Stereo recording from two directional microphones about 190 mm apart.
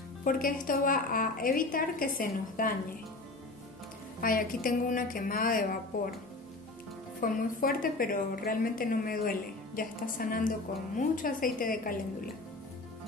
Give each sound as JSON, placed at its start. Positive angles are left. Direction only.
{"t": 0.2, "sound": "a woman's voice", "side_deg": 50}
{"t": 4.2, "sound": "a woman's voice", "side_deg": 50}
{"t": 7.2, "sound": "a woman's voice", "side_deg": 45}